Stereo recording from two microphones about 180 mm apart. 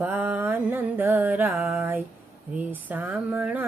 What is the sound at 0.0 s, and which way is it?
Music, 10° right (ahead or behind).